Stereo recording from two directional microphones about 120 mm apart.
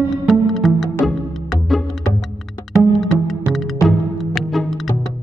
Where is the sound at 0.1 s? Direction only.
Centre (ahead or behind).